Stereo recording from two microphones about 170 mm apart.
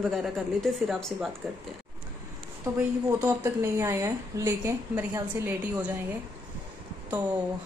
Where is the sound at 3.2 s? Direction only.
20° right (ahead or behind).